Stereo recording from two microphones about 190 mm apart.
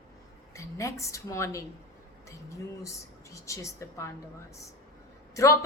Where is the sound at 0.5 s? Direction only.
15° left (ahead or behind).